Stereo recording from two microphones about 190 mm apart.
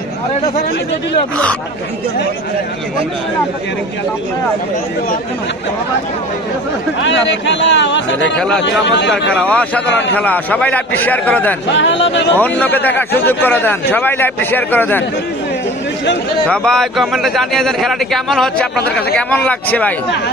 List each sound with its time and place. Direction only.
7.0 s speech: 75° left (ahead or behind)
8.4 s a man's voice: 5° left (ahead or behind)
8.6 s speech: 70° left (ahead or behind)
9.3 s a man's voice: 5° left (ahead or behind)
11.7 s speech: 70° left (ahead or behind)
12.4 s a man's voice: 10° left (ahead or behind)
16.4 s a man's voice: 5° left (ahead or behind)